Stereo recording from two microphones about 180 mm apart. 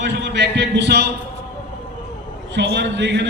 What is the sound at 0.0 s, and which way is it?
A man's voice, 75° right (ahead or behind).